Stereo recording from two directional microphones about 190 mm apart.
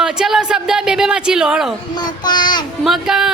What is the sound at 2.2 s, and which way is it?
Speech, 25° left (ahead or behind).